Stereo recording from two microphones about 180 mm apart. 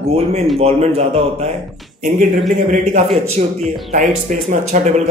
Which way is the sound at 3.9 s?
45° right (ahead or behind).